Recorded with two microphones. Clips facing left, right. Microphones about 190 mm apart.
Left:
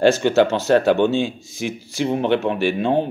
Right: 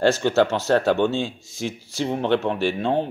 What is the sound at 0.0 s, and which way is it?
Speech, 20° left (ahead or behind).